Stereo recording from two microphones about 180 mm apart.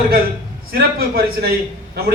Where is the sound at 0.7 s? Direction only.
60° right (ahead or behind).